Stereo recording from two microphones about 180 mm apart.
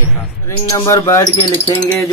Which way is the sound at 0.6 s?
15° left (ahead or behind).